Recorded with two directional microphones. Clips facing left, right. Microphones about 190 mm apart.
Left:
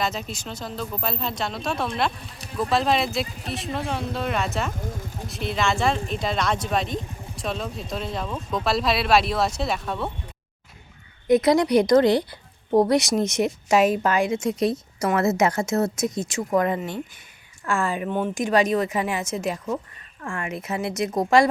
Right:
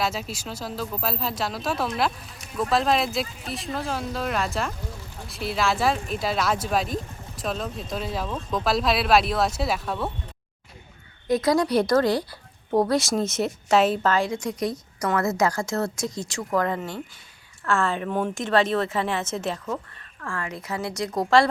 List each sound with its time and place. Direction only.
0.0 s speech: 5° right (ahead or behind)
11.3 s a woman's voice: 20° left (ahead or behind)